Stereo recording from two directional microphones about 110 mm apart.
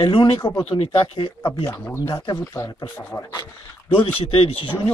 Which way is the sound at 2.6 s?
25° left (ahead or behind).